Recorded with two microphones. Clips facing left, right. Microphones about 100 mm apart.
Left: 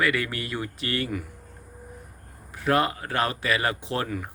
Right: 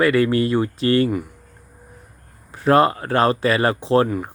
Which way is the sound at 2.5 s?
35° right (ahead or behind).